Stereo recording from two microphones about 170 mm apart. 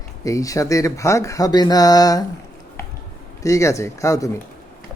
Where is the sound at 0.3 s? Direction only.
20° left (ahead or behind).